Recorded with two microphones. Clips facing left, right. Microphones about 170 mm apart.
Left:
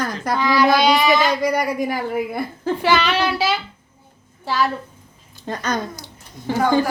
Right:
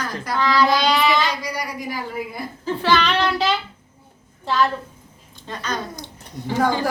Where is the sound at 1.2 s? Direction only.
55° left (ahead or behind).